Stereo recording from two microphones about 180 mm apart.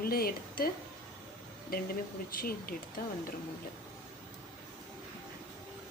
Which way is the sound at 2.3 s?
55° left (ahead or behind).